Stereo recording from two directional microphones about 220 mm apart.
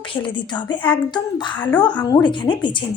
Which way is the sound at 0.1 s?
20° left (ahead or behind).